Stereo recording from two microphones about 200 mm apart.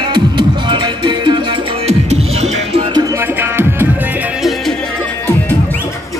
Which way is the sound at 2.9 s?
15° right (ahead or behind).